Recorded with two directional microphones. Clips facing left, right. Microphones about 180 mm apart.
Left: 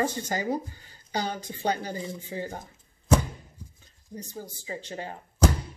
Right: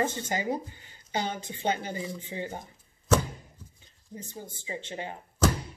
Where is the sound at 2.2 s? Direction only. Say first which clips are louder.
Left 1 dB; 20° right (ahead or behind).